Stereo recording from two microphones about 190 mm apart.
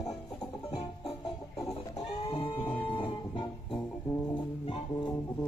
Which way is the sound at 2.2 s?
25° left (ahead or behind).